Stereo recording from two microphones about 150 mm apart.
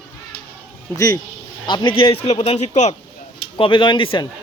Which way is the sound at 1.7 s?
35° left (ahead or behind).